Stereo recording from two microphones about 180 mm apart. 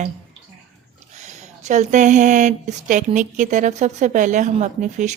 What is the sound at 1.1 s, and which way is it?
Speech, 40° right (ahead or behind).